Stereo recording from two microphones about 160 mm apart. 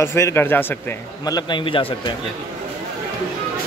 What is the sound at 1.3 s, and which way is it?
Speech, 30° left (ahead or behind).